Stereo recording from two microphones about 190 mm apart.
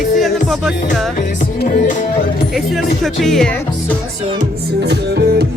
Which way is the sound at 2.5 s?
Centre (ahead or behind).